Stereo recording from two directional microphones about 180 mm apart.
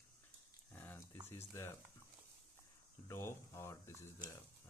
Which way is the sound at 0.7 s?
10° left (ahead or behind).